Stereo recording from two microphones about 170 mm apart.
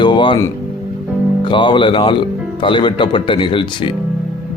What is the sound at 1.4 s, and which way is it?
Speech, 30° left (ahead or behind).